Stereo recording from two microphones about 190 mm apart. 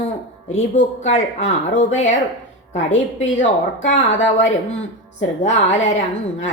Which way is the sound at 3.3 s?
40° left (ahead or behind).